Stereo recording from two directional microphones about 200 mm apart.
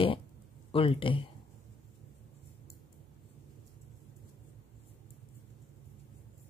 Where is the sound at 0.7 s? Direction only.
25° left (ahead or behind).